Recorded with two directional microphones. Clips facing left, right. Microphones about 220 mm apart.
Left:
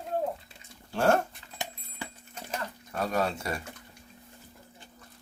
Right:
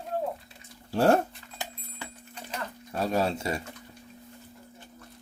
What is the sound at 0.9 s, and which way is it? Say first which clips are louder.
Speech: right 3 dB; 35° right (ahead or behind).